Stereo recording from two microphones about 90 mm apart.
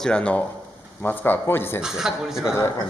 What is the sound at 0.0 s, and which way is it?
A man's voice, 10° left (ahead or behind).